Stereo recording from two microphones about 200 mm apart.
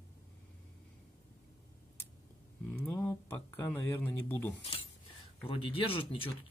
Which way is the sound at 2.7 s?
10° left (ahead or behind).